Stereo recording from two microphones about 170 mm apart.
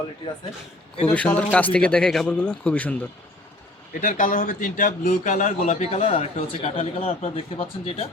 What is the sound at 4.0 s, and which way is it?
A man's voice, 50° left (ahead or behind).